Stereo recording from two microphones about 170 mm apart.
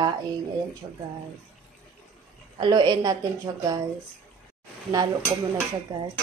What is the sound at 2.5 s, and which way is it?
Speech, 25° right (ahead or behind).